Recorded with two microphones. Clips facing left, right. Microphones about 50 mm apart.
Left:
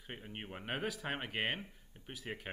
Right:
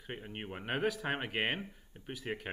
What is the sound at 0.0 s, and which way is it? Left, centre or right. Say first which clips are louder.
Speech: right 4 dB; centre.